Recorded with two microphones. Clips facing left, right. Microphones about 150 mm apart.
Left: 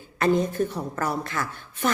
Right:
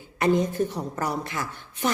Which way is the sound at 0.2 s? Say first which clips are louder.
Even; 15° right (ahead or behind).